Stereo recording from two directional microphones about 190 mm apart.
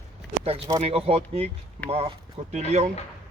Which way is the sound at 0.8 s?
30° right (ahead or behind).